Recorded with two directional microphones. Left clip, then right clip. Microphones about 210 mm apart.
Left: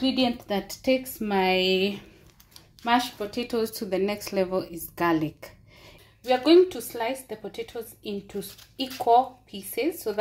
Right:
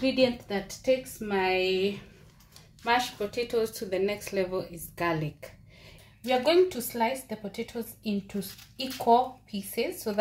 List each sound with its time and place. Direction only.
0.0 s a woman's voice: 45° left (ahead or behind)
2.8 s a woman's voice: 30° left (ahead or behind)